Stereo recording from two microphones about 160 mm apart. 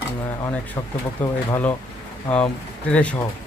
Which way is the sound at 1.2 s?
10° left (ahead or behind).